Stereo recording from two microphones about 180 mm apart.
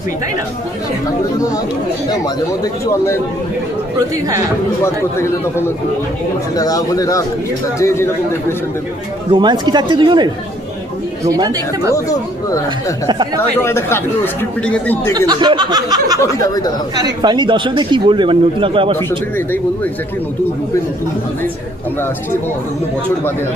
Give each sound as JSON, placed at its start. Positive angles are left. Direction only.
{"t": 4.8, "sound": "speech", "side_deg": 15}
{"t": 9.3, "sound": "speech", "side_deg": -25}
{"t": 11.9, "sound": "speech", "side_deg": 20}
{"t": 13.7, "sound": "speech", "side_deg": 15}
{"t": 15.3, "sound": "speech", "side_deg": -25}